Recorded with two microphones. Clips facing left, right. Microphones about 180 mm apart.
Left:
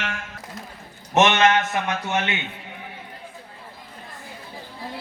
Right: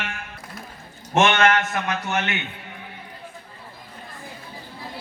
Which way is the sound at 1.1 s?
20° left (ahead or behind).